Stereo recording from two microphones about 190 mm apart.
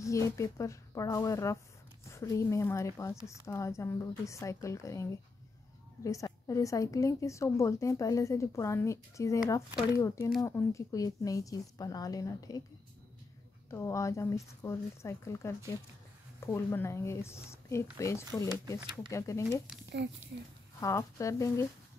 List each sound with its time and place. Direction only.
0.0 s a woman's voice: 15° left (ahead or behind)
13.7 s a woman's voice: 15° left (ahead or behind)
20.8 s a woman's voice: 15° left (ahead or behind)